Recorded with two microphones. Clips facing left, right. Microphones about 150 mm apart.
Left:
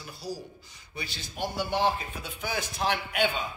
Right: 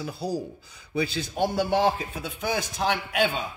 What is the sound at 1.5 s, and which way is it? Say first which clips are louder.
Speech: right 3 dB; 45° right (ahead or behind).